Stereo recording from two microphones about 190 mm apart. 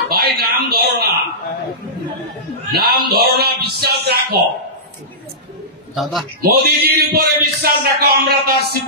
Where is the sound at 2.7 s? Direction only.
55° right (ahead or behind).